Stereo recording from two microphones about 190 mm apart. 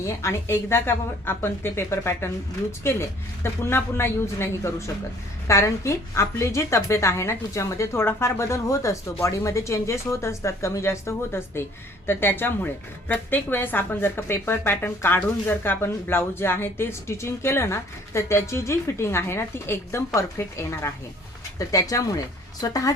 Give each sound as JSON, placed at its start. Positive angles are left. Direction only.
{"t": 0.2, "sound": "a woman's voice", "side_deg": 15}